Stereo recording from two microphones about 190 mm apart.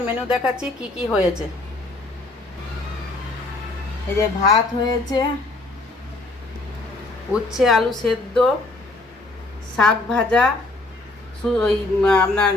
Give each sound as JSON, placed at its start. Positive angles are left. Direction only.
{"t": 0.0, "sound": "a woman's voice", "side_deg": -5}
{"t": 4.2, "sound": "speech", "side_deg": 20}
{"t": 7.3, "sound": "a woman's voice", "side_deg": 0}
{"t": 9.7, "sound": "a woman's voice", "side_deg": 5}